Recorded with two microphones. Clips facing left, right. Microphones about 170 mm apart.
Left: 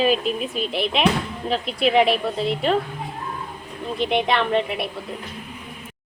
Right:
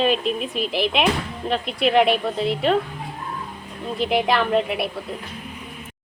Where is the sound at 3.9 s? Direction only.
5° right (ahead or behind).